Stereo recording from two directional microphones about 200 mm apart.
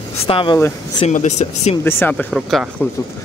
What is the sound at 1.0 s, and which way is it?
Speech, 35° left (ahead or behind).